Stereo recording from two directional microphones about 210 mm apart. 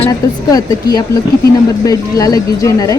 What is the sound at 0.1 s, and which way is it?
Speech, 20° left (ahead or behind).